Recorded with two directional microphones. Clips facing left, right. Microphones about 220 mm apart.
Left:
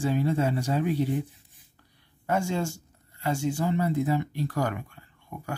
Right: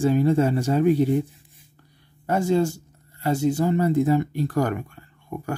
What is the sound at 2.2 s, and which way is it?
Speech, 35° right (ahead or behind).